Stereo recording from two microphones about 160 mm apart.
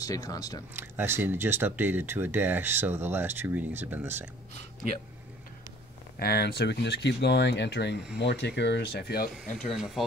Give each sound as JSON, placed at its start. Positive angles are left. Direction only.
{"t": 0.0, "sound": "speech", "side_deg": 20}
{"t": 0.7, "sound": "speech", "side_deg": -15}
{"t": 6.1, "sound": "speech", "side_deg": 80}
{"t": 9.8, "sound": "speech", "side_deg": 0}